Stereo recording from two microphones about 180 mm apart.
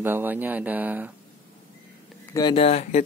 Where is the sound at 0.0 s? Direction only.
10° right (ahead or behind).